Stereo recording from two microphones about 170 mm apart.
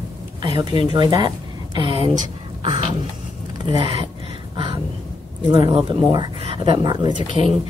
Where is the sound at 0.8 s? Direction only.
25° right (ahead or behind).